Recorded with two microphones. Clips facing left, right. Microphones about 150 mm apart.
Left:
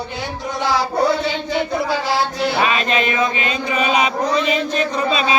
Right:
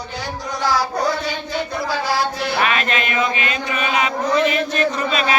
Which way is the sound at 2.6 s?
25° left (ahead or behind).